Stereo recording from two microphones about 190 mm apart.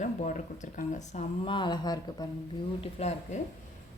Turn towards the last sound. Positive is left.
turn(degrees=35)  # may be behind; listen again after turning